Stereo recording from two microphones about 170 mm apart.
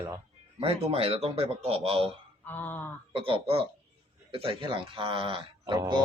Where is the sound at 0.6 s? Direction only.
35° right (ahead or behind).